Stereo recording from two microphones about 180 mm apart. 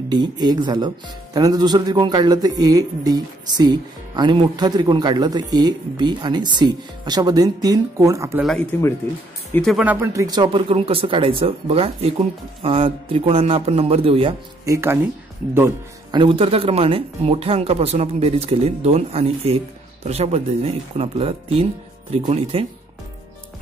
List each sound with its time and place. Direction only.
0.1 s speech: 25° right (ahead or behind)
8.4 s speech: centre (ahead or behind)
9.9 s speech: 20° right (ahead or behind)
14.6 s speech: 15° right (ahead or behind)
16.1 s speech: 30° right (ahead or behind)